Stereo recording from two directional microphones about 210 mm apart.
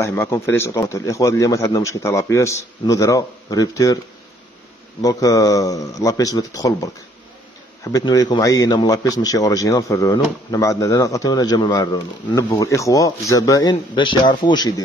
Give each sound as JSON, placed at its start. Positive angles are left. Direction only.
{"t": 0.0, "sound": "a man's voice", "side_deg": 15}
{"t": 5.0, "sound": "a man's voice", "side_deg": 15}